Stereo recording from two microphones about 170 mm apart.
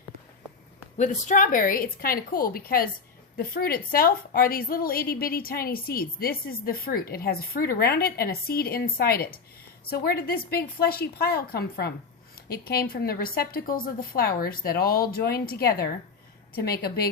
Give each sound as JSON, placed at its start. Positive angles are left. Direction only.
{"t": 0.9, "sound": "a woman's voice", "side_deg": 45}